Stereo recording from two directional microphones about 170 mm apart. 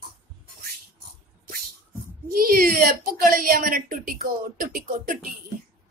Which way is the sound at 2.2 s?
60° right (ahead or behind).